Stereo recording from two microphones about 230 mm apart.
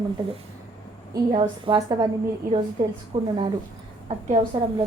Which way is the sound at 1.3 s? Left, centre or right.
Centre.